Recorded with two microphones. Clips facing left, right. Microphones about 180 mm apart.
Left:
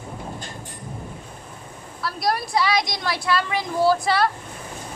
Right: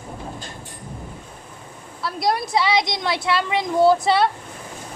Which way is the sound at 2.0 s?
20° right (ahead or behind).